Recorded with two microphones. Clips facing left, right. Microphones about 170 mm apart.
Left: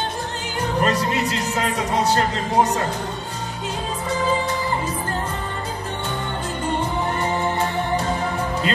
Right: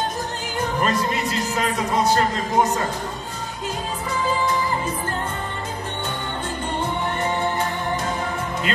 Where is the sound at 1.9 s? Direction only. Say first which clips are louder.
Right 1 dB; 35° left (ahead or behind).